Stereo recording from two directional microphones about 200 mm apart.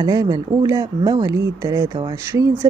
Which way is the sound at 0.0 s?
20° right (ahead or behind).